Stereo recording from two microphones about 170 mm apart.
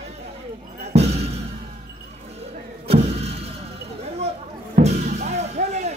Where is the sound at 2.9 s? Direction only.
35° right (ahead or behind).